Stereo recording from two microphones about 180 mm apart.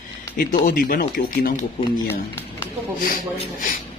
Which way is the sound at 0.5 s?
50° left (ahead or behind).